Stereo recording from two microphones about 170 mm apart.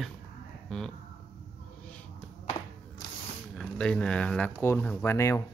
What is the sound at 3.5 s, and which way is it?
Speech, 5° left (ahead or behind).